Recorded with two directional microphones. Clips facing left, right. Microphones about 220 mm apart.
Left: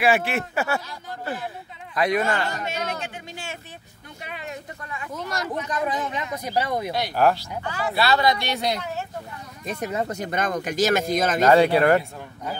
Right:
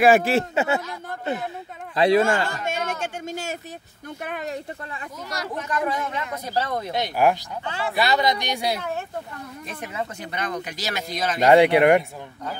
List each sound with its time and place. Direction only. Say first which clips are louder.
0.0 s speech: right 5 dB; 40° right (ahead or behind); by 0.8 s 20° right (ahead or behind)
2.0 s speech: right 4 dB; 30° right (ahead or behind)
2.6 s a sound: right 2 dB; 50° right (ahead or behind)
4.2 s speech: right 5 dB; 50° right (ahead or behind)
5.7 s speech: right 3 dB; 20° left (ahead or behind)
6.9 s speech: right 1 dB; 15° right (ahead or behind)
9.7 s speech: left 6 dB; 40° left (ahead or behind)
11.4 s speech: right 3 dB; 15° right (ahead or behind)